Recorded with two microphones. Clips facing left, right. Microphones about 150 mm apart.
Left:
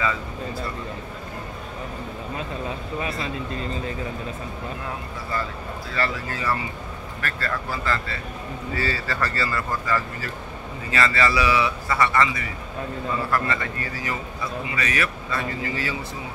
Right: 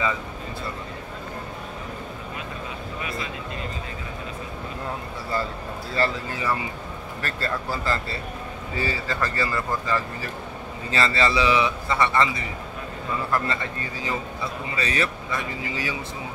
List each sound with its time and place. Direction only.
3.0 s speech: 35° left (ahead or behind)
6.2 s speech: 15° right (ahead or behind)
7.2 s speech: 30° right (ahead or behind)
8.7 s speech: 15° right (ahead or behind)
10.9 s a man's voice: 30° right (ahead or behind)
15.3 s speech: 15° right (ahead or behind)